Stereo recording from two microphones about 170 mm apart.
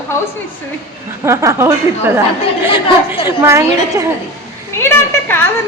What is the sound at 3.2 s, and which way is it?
Speech, 15° right (ahead or behind).